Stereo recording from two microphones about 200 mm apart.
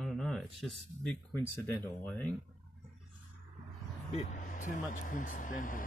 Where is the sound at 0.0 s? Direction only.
Centre (ahead or behind).